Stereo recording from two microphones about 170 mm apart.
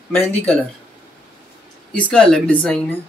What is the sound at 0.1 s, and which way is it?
Speech, 5° left (ahead or behind).